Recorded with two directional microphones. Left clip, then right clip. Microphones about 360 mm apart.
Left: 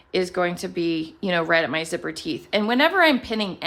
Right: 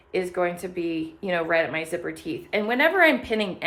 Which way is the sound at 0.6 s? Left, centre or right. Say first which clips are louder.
Left 3 dB; centre.